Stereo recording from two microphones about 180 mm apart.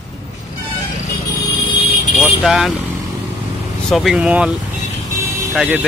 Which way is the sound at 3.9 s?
Centre (ahead or behind).